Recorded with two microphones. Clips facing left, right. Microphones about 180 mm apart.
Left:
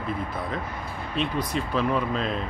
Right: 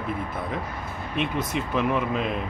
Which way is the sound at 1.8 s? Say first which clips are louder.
Right 1 dB; 10° right (ahead or behind).